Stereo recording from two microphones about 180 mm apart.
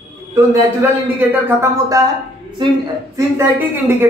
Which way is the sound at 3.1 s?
10° right (ahead or behind).